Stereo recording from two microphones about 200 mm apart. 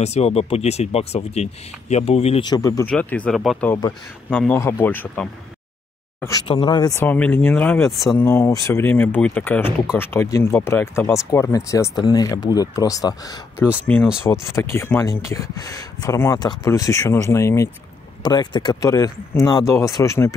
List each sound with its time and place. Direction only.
0.0 s speech: 30° left (ahead or behind); by 5.3 s 10° left (ahead or behind)
6.2 s speech: 20° left (ahead or behind); by 8.2 s centre (ahead or behind)
8.2 s speech: 10° left (ahead or behind)